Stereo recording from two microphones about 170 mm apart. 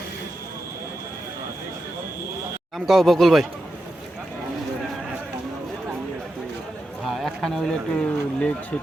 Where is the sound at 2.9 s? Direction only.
Centre (ahead or behind).